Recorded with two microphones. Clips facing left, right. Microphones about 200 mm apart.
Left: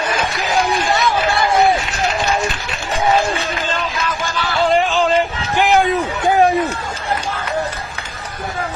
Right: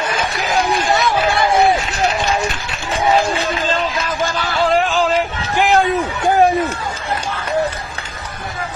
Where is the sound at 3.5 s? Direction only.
35° right (ahead or behind).